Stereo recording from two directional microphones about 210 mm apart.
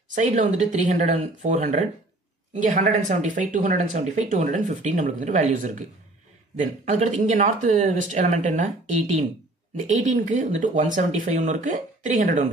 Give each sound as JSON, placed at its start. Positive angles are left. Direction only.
{"t": 0.1, "sound": "speech", "side_deg": -35}